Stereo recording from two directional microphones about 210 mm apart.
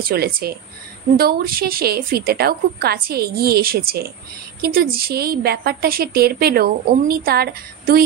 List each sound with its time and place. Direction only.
0.0 s a woman's voice: 45° right (ahead or behind)